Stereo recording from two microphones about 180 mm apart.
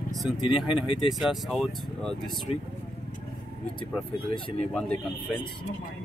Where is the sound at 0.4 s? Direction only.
30° left (ahead or behind).